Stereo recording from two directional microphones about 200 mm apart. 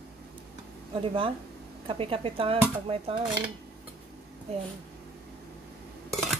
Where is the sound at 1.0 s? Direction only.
25° right (ahead or behind).